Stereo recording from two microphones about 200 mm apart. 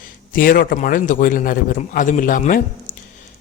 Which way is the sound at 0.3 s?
45° left (ahead or behind).